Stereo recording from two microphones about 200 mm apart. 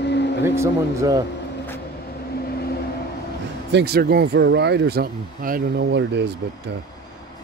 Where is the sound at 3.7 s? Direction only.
55° right (ahead or behind).